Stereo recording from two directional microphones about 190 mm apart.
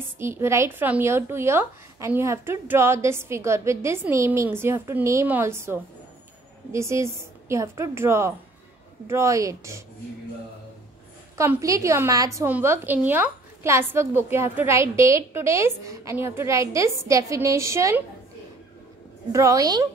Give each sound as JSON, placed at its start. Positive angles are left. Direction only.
{"t": 0.2, "sound": "a woman's voice", "side_deg": -15}
{"t": 11.3, "sound": "a woman's voice", "side_deg": -15}
{"t": 19.3, "sound": "a woman's voice", "side_deg": -15}